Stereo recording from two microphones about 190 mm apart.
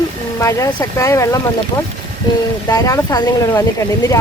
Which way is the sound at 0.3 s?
15° left (ahead or behind).